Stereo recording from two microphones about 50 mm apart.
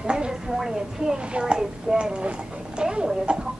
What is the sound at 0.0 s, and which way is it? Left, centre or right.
A child's voice, centre.